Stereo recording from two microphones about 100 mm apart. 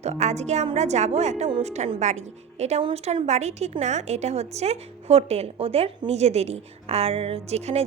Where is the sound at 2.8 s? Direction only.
75° right (ahead or behind); by 7.8 s 90° right.